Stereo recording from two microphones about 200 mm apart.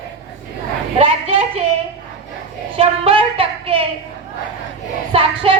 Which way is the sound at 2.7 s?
30° right (ahead or behind).